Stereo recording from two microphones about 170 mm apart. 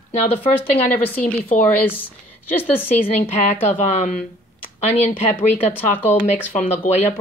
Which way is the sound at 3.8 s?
45° left (ahead or behind).